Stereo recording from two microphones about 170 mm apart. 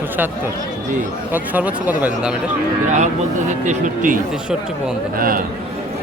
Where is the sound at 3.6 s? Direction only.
50° right (ahead or behind).